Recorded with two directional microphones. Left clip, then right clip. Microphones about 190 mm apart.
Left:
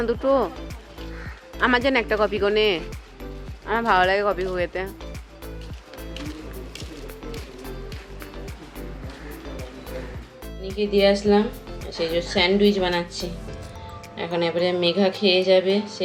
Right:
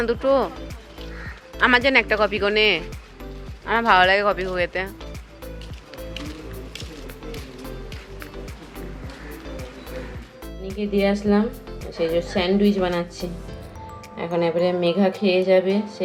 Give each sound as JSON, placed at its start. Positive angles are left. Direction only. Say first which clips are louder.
{"t": 0.0, "sound": "speech", "louder": "right 1 dB", "side_deg": 20}
{"t": 1.5, "sound": "speech", "louder": "right 3 dB", "side_deg": 20}
{"t": 6.0, "sound": "music", "louder": "right 1 dB", "side_deg": 0}
{"t": 10.6, "sound": "speech", "louder": "left 3 dB", "side_deg": 0}
{"t": 14.2, "sound": "speech", "louder": "right 2 dB", "side_deg": 0}